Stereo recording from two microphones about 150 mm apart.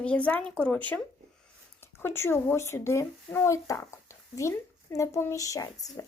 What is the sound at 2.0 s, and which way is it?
Speech, 15° left (ahead or behind).